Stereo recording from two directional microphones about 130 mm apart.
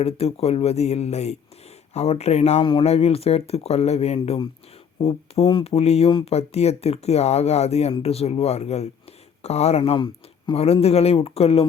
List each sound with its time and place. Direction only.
0.0 s speech: 50° left (ahead or behind)